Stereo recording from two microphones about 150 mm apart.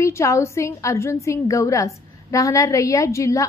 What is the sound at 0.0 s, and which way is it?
A woman's voice, 20° left (ahead or behind).